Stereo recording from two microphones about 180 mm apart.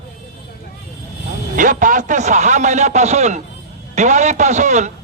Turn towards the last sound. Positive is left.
turn(degrees=-40)  # may be behind; listen again after turning